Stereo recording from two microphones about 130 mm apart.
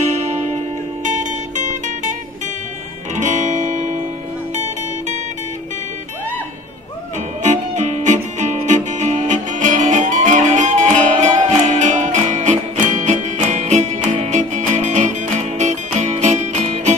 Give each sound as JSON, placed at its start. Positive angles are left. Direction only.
{"t": 1.6, "sound": "music", "side_deg": -65}
{"t": 3.2, "sound": "music", "side_deg": -65}
{"t": 7.4, "sound": "music", "side_deg": -65}